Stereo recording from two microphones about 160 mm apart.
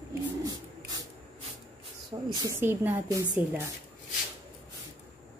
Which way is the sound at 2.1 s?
25° right (ahead or behind).